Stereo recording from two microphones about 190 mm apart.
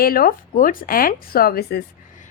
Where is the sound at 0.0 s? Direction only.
50° left (ahead or behind).